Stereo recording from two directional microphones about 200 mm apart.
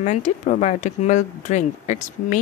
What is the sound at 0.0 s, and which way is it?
Speech, 35° left (ahead or behind).